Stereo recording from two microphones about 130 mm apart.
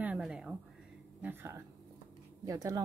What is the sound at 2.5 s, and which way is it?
Speech, 30° right (ahead or behind).